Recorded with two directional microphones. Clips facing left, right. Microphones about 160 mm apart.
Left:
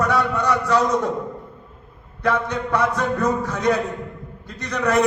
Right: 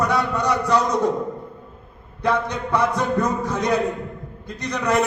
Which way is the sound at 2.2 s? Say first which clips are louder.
Even; 15° right (ahead or behind).